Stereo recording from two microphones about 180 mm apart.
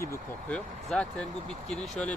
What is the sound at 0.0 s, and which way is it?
Speech, 15° left (ahead or behind).